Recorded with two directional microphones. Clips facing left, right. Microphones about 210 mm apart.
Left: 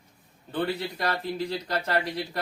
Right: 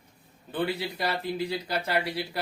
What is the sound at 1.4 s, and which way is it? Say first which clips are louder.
Speech: even; 10° right (ahead or behind).